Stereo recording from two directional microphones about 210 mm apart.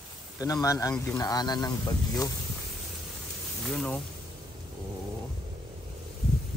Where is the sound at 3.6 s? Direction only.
5° left (ahead or behind).